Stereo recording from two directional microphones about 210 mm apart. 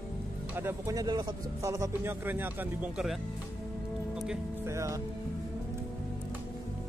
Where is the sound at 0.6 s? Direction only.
15° right (ahead or behind).